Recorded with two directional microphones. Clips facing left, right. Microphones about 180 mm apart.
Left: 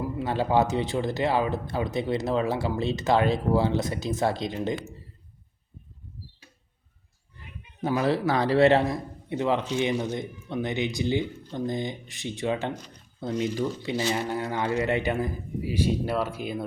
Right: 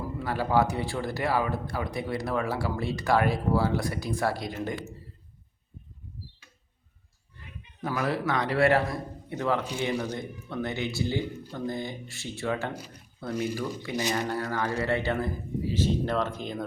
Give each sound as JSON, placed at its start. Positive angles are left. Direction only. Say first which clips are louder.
{"t": 0.2, "sound": "speech", "louder": "left 1 dB", "side_deg": 20}
{"t": 7.8, "sound": "speech", "louder": "left 4 dB", "side_deg": 25}
{"t": 9.6, "sound": "speech", "louder": "left 5 dB", "side_deg": -10}
{"t": 9.8, "sound": "a man's voice", "louder": "left 3 dB", "side_deg": 20}
{"t": 12.7, "sound": "speech", "louder": "even", "side_deg": -10}
{"t": 13.2, "sound": "speech", "louder": "left 3 dB", "side_deg": 20}
{"t": 14.0, "sound": "speech", "louder": "left 1 dB", "side_deg": -15}
{"t": 14.3, "sound": "a man's voice", "louder": "left 2 dB", "side_deg": 20}